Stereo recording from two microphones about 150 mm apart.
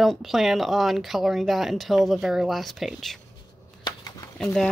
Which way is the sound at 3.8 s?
25° left (ahead or behind).